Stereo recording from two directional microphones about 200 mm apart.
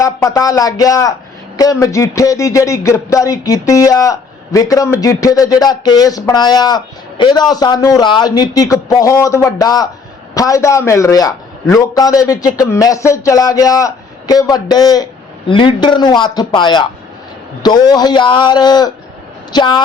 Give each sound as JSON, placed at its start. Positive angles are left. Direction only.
{"t": 0.0, "sound": "a man's voice", "side_deg": 15}